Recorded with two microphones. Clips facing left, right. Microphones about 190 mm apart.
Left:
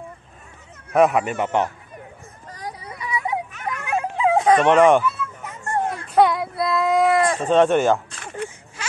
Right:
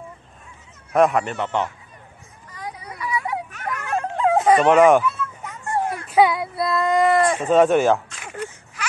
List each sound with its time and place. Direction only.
0.9 s speech: 5° left (ahead or behind)
3.0 s a sound: 20° left (ahead or behind)
3.6 s dog: 10° left (ahead or behind); by 5.1 s 5° right (ahead or behind)
5.7 s speech: 5° right (ahead or behind)